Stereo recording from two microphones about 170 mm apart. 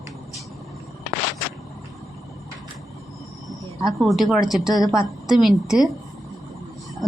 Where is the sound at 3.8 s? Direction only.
Centre (ahead or behind).